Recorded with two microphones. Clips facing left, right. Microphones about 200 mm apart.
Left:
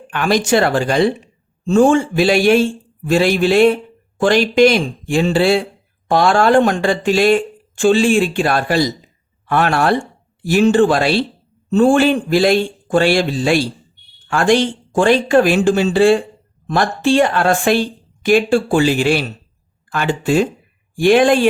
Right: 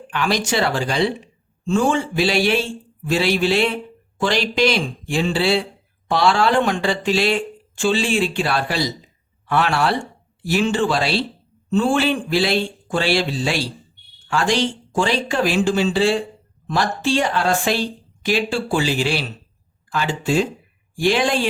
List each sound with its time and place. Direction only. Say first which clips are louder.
0.1 s speech: left 6 dB; 50° left (ahead or behind)